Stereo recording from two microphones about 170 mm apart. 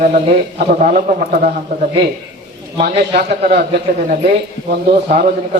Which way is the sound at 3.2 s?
75° right (ahead or behind).